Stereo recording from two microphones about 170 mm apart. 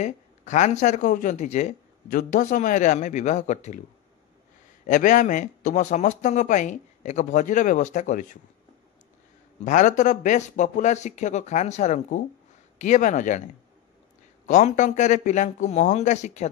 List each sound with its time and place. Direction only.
0.0 s speech: 45° left (ahead or behind)
4.8 s speech: 50° left (ahead or behind)
9.7 s speech: 45° left (ahead or behind)
14.4 s speech: 45° left (ahead or behind)